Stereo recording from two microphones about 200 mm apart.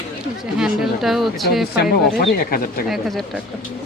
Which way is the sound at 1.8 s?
50° left (ahead or behind).